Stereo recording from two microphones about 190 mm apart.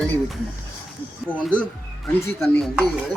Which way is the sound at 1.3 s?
5° left (ahead or behind).